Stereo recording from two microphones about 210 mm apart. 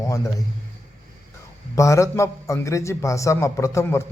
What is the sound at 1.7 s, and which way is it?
A man's voice, 15° left (ahead or behind).